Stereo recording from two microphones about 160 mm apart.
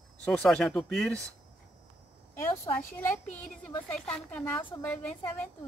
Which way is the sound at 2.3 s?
15° left (ahead or behind).